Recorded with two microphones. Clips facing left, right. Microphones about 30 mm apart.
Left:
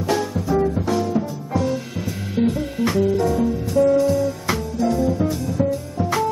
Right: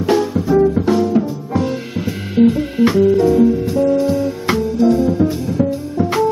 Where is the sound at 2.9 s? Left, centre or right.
Centre.